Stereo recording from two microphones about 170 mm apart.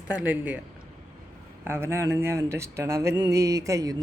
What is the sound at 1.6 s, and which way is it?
Speech, 15° right (ahead or behind).